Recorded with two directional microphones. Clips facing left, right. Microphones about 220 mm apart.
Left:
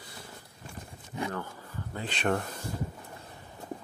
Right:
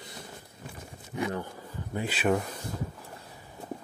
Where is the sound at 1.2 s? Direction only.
20° right (ahead or behind).